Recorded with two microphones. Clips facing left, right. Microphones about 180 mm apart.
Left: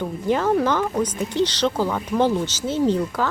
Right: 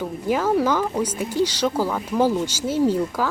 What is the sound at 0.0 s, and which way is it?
Speech, 5° right (ahead or behind).